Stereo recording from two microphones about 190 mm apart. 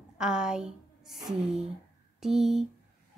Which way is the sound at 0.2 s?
5° right (ahead or behind).